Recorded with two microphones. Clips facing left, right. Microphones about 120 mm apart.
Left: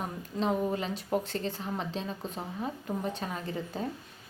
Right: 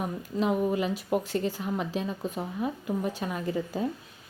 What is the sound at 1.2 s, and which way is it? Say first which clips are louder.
Speech: right 5 dB; 25° left (ahead or behind).